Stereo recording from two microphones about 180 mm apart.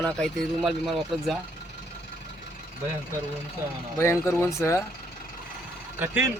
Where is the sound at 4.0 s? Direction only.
15° left (ahead or behind).